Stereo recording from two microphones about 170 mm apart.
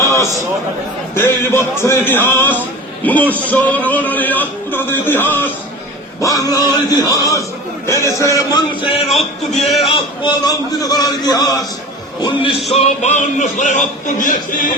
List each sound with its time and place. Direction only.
0.1 s a sound: 20° left (ahead or behind)
1.1 s a man's voice: 15° left (ahead or behind)
9.8 s a man's voice: 30° left (ahead or behind)
12.7 s a man's voice: 40° left (ahead or behind)